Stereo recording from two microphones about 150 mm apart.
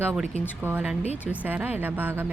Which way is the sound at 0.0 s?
15° right (ahead or behind).